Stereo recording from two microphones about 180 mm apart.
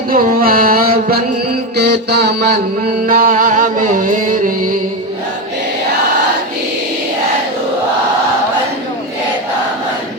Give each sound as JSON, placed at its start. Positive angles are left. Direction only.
{"t": 0.1, "sound": "music", "side_deg": -50}
{"t": 1.7, "sound": "music", "side_deg": -65}
{"t": 3.1, "sound": "music", "side_deg": -50}